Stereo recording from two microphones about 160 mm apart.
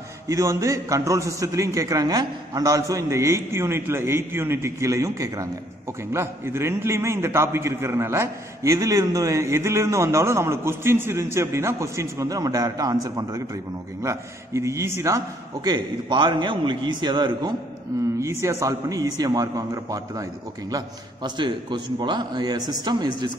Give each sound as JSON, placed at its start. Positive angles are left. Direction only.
{"t": 0.3, "sound": "a man's voice", "side_deg": -20}
{"t": 18.2, "sound": "a man's voice", "side_deg": -15}